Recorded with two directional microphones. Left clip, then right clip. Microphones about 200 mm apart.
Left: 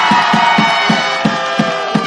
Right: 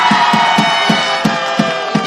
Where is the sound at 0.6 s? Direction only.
20° right (ahead or behind).